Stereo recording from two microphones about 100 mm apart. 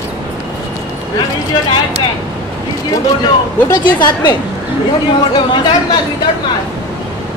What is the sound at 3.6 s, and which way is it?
Speech, 45° left (ahead or behind).